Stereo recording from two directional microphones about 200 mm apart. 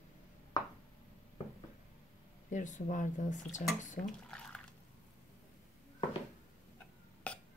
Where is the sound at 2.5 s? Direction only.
40° left (ahead or behind).